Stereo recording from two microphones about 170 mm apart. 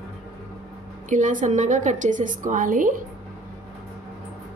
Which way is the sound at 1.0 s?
50° right (ahead or behind).